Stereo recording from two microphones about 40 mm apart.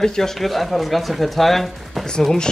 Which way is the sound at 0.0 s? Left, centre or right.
Centre.